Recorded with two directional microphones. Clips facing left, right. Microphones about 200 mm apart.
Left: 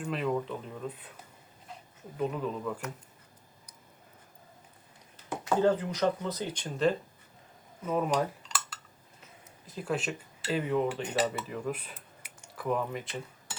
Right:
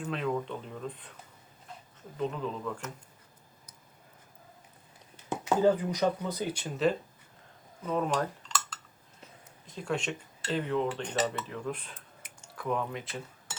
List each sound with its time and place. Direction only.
0.0 s speech: centre (ahead or behind)
2.1 s speech: 5° left (ahead or behind)
5.6 s speech: 10° right (ahead or behind)
7.9 s cutlery: 5° left (ahead or behind)